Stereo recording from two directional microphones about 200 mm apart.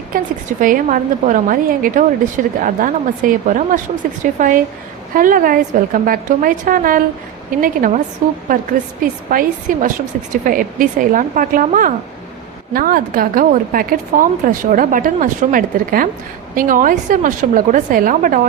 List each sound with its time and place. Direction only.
0.1 s a woman's voice: 45° right (ahead or behind)